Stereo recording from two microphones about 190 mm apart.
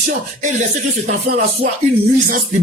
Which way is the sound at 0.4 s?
40° right (ahead or behind).